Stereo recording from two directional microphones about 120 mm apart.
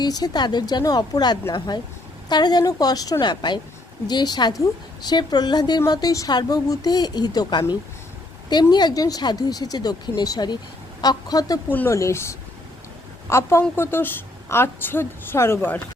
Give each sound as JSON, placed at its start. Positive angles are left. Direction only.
{"t": 0.0, "sound": "a woman's voice", "side_deg": 35}
{"t": 11.7, "sound": "a woman's voice", "side_deg": 20}